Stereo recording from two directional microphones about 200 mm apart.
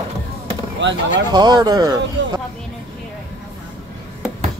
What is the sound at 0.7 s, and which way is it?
Speech, 65° right (ahead or behind).